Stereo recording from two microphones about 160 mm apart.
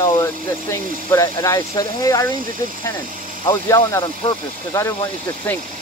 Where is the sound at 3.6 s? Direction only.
15° left (ahead or behind).